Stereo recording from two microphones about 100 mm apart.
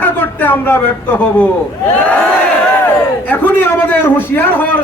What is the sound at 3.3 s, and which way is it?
A man's voice, 20° left (ahead or behind).